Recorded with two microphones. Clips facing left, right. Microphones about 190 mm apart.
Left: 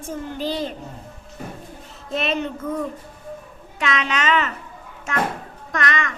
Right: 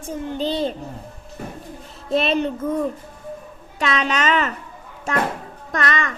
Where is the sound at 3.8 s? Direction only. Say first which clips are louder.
Right 2 dB; 35° right (ahead or behind).